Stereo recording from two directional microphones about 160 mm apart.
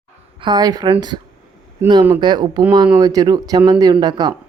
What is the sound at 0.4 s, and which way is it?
Speech, 25° right (ahead or behind).